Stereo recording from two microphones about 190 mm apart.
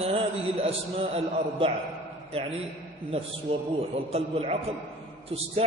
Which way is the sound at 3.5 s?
35° right (ahead or behind).